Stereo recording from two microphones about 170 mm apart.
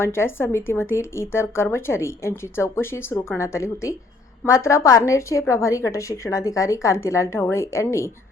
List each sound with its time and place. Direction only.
0.0 s speech: 15° left (ahead or behind)